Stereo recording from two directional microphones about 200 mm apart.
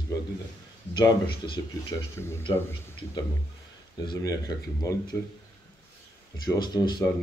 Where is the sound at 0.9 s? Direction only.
20° left (ahead or behind).